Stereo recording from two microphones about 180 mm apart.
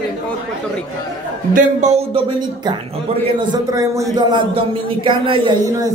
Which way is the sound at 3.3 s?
25° right (ahead or behind).